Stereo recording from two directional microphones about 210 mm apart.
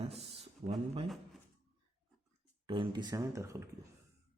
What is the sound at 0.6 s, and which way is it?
Speech, 30° right (ahead or behind).